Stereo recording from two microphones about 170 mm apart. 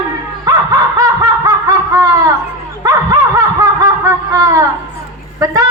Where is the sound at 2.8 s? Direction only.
20° right (ahead or behind).